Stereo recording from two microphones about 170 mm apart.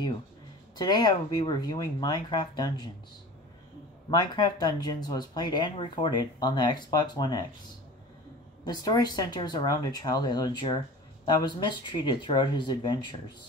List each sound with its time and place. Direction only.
0.7 s speech: 25° left (ahead or behind)
4.1 s speech: 25° left (ahead or behind)
8.6 s speech: 25° left (ahead or behind)